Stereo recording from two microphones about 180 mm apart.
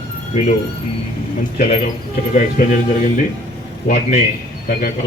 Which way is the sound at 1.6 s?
45° left (ahead or behind).